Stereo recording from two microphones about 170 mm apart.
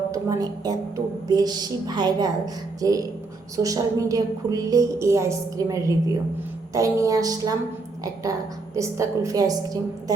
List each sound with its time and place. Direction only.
0.1 s a woman's voice: 20° right (ahead or behind)